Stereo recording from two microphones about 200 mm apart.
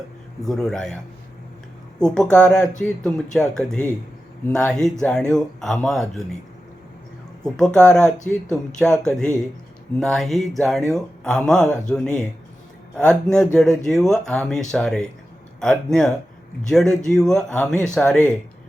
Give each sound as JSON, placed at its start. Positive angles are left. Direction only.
{"t": 0.4, "sound": "speech", "side_deg": 0}
{"t": 2.0, "sound": "speech", "side_deg": 5}
{"t": 7.4, "sound": "speech", "side_deg": 5}